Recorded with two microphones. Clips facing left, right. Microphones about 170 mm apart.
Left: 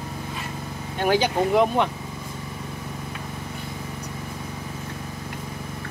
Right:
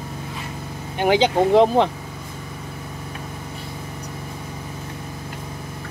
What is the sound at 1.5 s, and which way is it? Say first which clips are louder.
Speech: right 5 dB; 30° right (ahead or behind).